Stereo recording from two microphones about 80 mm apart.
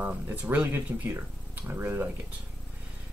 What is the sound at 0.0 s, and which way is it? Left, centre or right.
Speech, right.